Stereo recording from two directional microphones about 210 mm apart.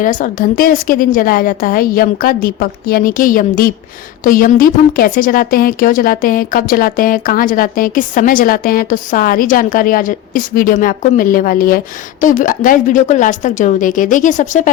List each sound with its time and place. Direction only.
0.0 s a woman's voice: 40° left (ahead or behind)